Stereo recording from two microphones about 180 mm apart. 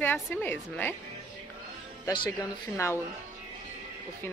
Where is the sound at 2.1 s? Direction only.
20° left (ahead or behind).